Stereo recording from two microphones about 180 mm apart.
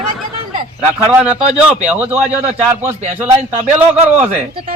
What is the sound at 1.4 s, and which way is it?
Speech, 35° right (ahead or behind).